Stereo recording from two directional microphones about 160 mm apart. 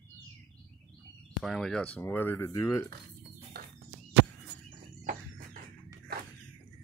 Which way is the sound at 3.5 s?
70° right (ahead or behind).